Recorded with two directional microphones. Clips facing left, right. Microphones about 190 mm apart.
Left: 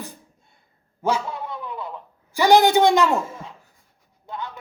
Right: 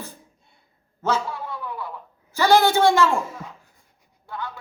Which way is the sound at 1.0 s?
15° left (ahead or behind).